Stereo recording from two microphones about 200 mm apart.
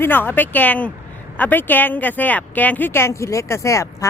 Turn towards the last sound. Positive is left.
turn(degrees=15)  # may be behind; listen again after turning